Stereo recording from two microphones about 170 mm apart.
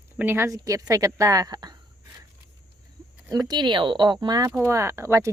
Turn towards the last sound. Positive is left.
turn(degrees=-15)  # may be behind; listen again after turning